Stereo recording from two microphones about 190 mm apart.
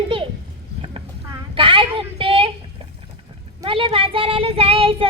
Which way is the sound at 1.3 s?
25° right (ahead or behind).